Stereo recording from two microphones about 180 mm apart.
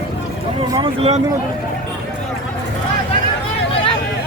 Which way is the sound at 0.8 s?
35° right (ahead or behind).